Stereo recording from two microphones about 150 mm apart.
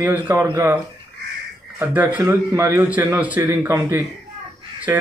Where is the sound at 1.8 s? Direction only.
15° right (ahead or behind).